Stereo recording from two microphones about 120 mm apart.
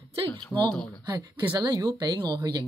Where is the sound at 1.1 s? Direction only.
35° right (ahead or behind).